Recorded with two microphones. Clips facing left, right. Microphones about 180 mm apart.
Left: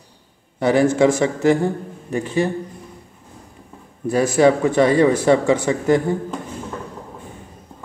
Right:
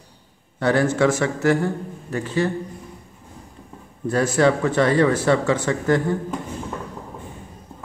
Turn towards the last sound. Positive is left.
turn(degrees=15)  # may be behind; listen again after turning